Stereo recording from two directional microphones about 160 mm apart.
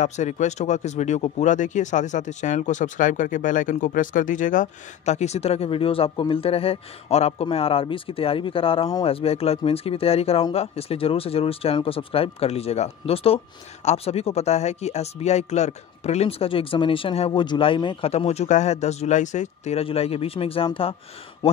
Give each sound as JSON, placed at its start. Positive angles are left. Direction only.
{"t": 0.0, "sound": "speech", "side_deg": 45}